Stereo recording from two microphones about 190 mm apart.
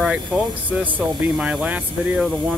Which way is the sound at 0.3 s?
5° right (ahead or behind).